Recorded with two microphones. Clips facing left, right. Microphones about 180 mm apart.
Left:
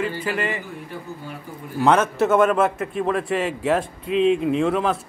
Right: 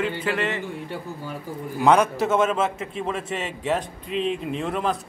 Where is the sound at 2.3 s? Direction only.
25° right (ahead or behind).